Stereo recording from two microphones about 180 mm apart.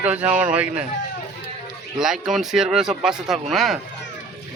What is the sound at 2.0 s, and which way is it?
Speech, centre (ahead or behind).